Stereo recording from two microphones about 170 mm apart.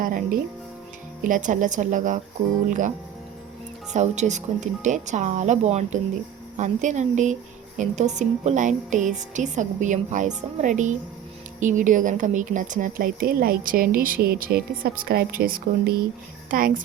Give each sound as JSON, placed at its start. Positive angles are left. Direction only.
{"t": 0.0, "sound": "a woman's voice", "side_deg": -55}
{"t": 3.9, "sound": "a woman's voice", "side_deg": -40}